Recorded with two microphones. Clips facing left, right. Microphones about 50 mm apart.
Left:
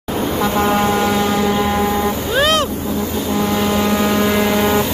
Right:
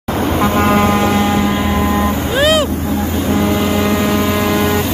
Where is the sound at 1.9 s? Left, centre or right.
Right.